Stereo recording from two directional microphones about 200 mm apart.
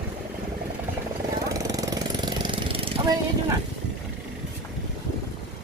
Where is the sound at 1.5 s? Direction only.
15° right (ahead or behind).